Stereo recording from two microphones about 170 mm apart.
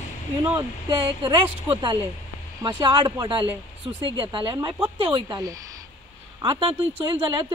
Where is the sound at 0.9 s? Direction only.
30° right (ahead or behind).